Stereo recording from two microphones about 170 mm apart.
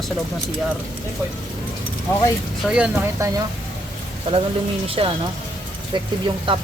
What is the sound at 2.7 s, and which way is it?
Speech, 5° right (ahead or behind).